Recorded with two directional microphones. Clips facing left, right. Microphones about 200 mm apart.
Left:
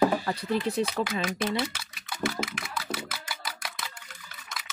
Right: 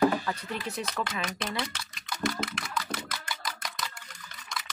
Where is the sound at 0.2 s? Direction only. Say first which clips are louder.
Left 6 dB; 35° left (ahead or behind).